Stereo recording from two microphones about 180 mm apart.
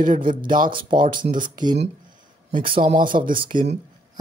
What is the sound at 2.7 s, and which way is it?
Speech, 30° right (ahead or behind).